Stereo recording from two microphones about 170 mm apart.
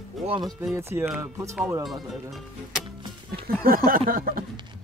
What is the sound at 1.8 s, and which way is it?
Speech, centre (ahead or behind).